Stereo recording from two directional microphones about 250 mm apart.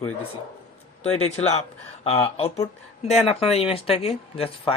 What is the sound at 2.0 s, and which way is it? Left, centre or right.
Speech, left.